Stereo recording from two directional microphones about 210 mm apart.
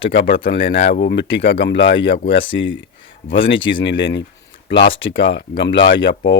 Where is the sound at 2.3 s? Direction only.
25° left (ahead or behind).